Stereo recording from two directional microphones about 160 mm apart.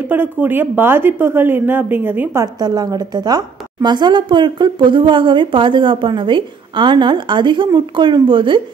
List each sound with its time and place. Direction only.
0.1 s speech: 10° right (ahead or behind)
2.4 s a woman's voice: 25° right (ahead or behind)